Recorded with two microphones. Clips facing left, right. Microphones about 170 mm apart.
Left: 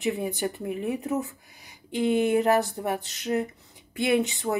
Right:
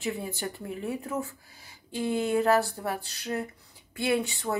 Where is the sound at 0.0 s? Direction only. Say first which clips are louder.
Left 5 dB; 20° left (ahead or behind).